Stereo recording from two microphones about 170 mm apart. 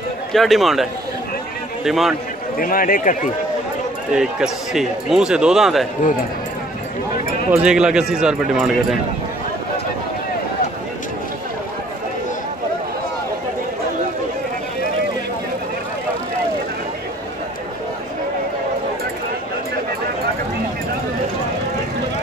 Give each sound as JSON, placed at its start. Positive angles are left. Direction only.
{"t": 0.3, "sound": "speech", "side_deg": 0}
{"t": 1.9, "sound": "speech", "side_deg": 0}
{"t": 2.5, "sound": "a man's voice", "side_deg": 55}
{"t": 4.1, "sound": "speech", "side_deg": -5}
{"t": 7.5, "sound": "speech", "side_deg": -5}